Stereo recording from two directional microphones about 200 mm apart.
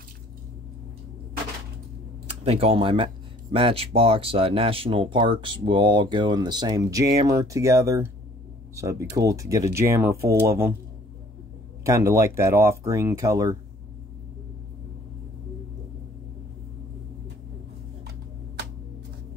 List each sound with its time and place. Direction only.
2.4 s speech: 30° right (ahead or behind); by 10.7 s 15° right (ahead or behind)
11.8 s speech: 15° right (ahead or behind)